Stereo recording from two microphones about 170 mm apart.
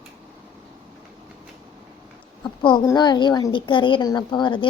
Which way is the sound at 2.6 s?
30° left (ahead or behind).